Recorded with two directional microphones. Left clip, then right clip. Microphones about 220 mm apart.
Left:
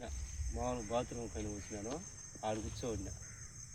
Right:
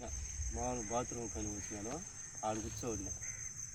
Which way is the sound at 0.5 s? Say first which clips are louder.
Left 1 dB; centre (ahead or behind).